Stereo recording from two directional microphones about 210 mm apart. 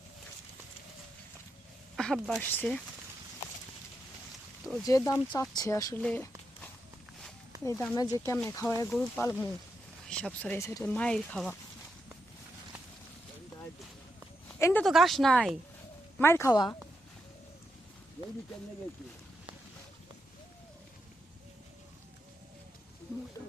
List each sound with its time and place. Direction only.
2.0 s speech: centre (ahead or behind)
4.9 s speech: 15° left (ahead or behind)
6.0 s a sound: 5° left (ahead or behind)
7.6 s speech: 15° left (ahead or behind)
14.6 s speech: 10° left (ahead or behind)